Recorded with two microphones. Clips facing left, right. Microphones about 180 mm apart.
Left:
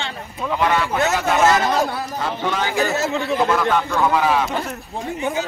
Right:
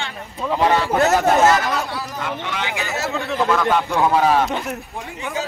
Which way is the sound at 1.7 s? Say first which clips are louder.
Left 4 dB; 40° left (ahead or behind).